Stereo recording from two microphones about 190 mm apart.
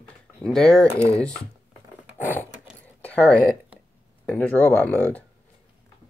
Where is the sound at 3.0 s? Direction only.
10° left (ahead or behind).